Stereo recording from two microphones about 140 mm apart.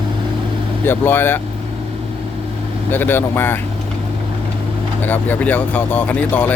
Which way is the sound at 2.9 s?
15° left (ahead or behind).